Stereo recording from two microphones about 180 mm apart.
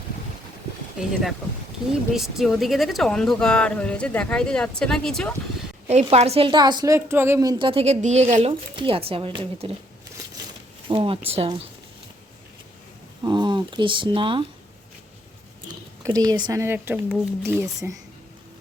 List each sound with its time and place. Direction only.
1.0 s speech: 5° right (ahead or behind)
5.9 s a woman's voice: 35° right (ahead or behind)
8.7 s a woman's voice: 30° right (ahead or behind)
10.8 s speech: 30° right (ahead or behind)
13.2 s speech: 25° right (ahead or behind)
16.0 s a woman's voice: 20° right (ahead or behind)